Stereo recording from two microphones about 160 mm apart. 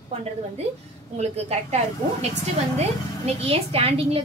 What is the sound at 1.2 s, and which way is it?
A woman's voice, 40° right (ahead or behind).